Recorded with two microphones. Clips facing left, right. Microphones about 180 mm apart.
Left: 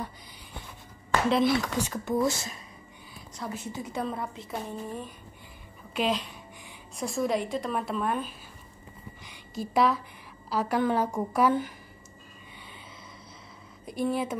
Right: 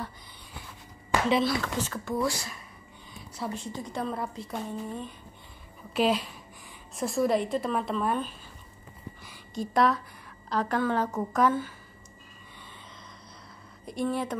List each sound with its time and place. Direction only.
1.4 s a woman's voice: 15° left (ahead or behind)
3.5 s a woman's voice: 5° left (ahead or behind)
5.9 s a woman's voice: 5° right (ahead or behind)
9.2 s a sound: centre (ahead or behind)
10.5 s a woman's voice: 10° left (ahead or behind)
13.8 s speech: centre (ahead or behind)